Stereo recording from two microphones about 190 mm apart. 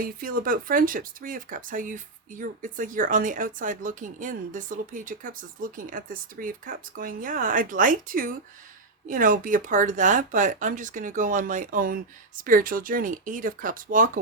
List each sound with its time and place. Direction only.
0.0 s speech: 45° right (ahead or behind)